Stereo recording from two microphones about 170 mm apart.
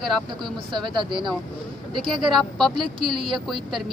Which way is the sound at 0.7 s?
30° right (ahead or behind).